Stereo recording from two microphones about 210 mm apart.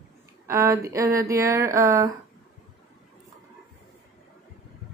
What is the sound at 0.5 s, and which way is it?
A woman's voice, 15° right (ahead or behind).